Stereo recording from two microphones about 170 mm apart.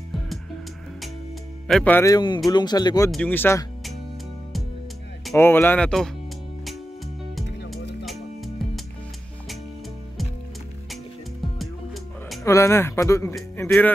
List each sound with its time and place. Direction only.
1.7 s speech: 5° left (ahead or behind)
2.0 s speech: 20° left (ahead or behind)
3.1 s speech: 10° left (ahead or behind)
5.3 s speech: 15° left (ahead or behind)
8.0 s music: centre (ahead or behind)
11.5 s music: centre (ahead or behind)
12.4 s speech: 15° left (ahead or behind)